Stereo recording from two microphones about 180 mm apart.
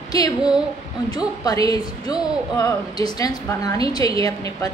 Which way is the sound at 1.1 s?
20° left (ahead or behind).